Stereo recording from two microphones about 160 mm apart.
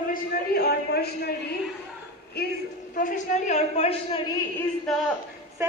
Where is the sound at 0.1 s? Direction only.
75° left (ahead or behind).